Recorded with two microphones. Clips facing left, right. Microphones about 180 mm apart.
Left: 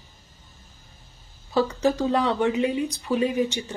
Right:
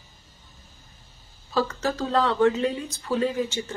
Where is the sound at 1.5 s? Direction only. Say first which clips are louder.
Left 4 dB; 15° left (ahead or behind).